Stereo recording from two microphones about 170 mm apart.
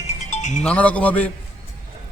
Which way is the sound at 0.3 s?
45° left (ahead or behind).